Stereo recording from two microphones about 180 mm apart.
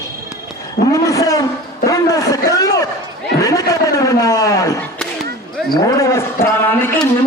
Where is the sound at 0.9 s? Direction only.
20° left (ahead or behind).